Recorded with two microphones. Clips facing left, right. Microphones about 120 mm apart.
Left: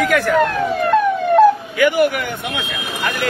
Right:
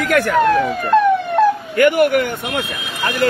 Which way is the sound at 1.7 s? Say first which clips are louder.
Right 2 dB; 55° right (ahead or behind).